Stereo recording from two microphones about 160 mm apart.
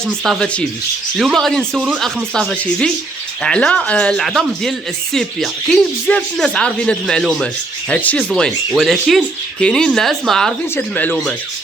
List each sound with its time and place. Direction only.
0.0 s speech: 5° left (ahead or behind)